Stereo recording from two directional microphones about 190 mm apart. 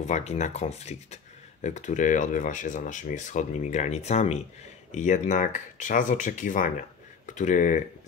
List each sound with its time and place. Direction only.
0.0 s speech: 35° left (ahead or behind)